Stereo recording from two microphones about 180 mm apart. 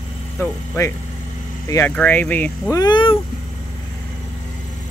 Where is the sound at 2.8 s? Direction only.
25° left (ahead or behind).